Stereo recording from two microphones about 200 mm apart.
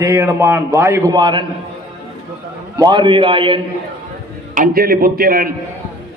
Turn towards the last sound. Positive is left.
turn(degrees=-50)  # may be behind; listen again after turning